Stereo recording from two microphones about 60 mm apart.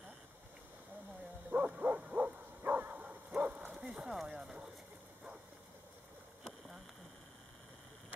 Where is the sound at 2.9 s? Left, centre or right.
Centre.